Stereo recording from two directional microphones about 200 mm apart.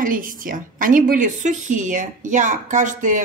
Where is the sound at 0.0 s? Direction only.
45° right (ahead or behind).